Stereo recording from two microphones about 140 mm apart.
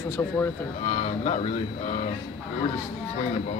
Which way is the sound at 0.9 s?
55° left (ahead or behind).